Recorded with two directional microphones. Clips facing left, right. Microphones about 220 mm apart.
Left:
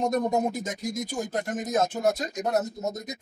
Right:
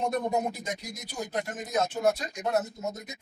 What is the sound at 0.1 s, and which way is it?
Speech, 45° left (ahead or behind).